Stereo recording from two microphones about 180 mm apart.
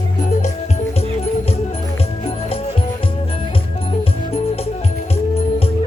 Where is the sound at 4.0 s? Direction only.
35° left (ahead or behind).